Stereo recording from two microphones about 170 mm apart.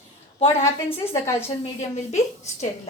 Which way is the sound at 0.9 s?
35° left (ahead or behind).